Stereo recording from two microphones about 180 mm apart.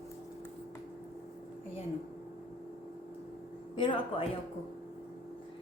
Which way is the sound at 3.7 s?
30° left (ahead or behind).